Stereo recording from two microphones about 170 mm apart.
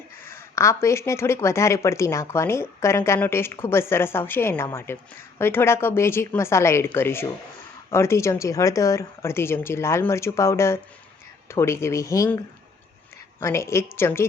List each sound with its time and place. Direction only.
0.3 s speech: 15° left (ahead or behind)
13.4 s speech: 15° left (ahead or behind)